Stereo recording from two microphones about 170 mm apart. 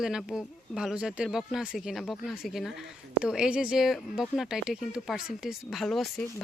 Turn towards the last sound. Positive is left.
turn(degrees=0)  # may be behind; listen again after turning